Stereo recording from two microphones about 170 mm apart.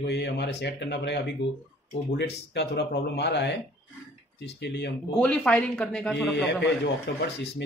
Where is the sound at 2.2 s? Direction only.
90° left.